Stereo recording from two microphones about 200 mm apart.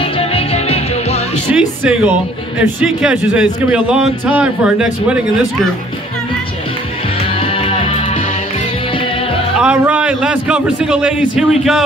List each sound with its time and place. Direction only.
0.0 s music: 30° left (ahead or behind)
1.5 s a man's voice: 5° right (ahead or behind)
9.6 s a man's voice: 5° right (ahead or behind)